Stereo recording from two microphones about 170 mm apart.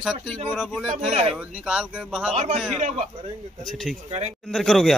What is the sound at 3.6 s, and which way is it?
Speech, centre (ahead or behind).